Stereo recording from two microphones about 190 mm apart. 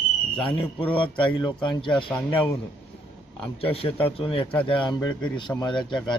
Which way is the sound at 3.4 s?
30° left (ahead or behind).